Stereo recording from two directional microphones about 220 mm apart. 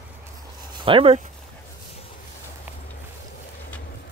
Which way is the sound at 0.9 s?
25° right (ahead or behind).